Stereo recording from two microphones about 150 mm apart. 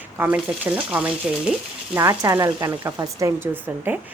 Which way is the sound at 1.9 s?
20° right (ahead or behind).